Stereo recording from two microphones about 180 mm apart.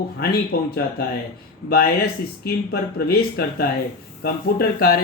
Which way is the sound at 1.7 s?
60° left (ahead or behind).